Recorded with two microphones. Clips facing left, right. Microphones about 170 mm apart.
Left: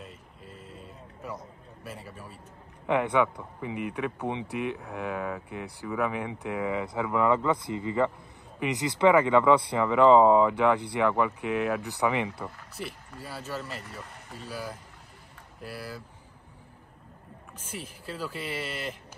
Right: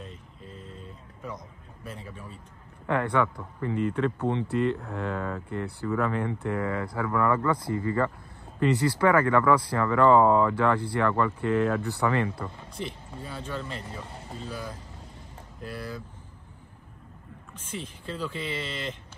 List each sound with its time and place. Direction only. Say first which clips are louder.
0.0 s a sound: right 2 dB; 5° left (ahead or behind)
2.9 s speech: left 1 dB; 15° left (ahead or behind)
17.6 s speech: right 3 dB; 10° left (ahead or behind)